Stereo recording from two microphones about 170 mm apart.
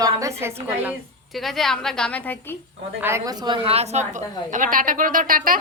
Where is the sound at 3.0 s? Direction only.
15° right (ahead or behind).